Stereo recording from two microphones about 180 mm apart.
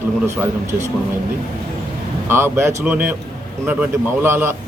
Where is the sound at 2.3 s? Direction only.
15° right (ahead or behind).